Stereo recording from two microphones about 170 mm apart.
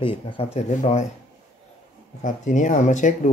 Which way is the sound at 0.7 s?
45° left (ahead or behind).